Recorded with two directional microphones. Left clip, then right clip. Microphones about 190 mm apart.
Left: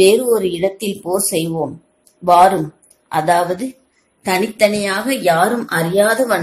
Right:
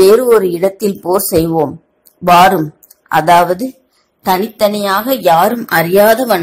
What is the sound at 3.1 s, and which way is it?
Speech, 25° right (ahead or behind).